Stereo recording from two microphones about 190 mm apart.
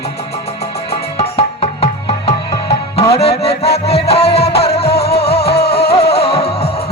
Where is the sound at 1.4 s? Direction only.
25° left (ahead or behind).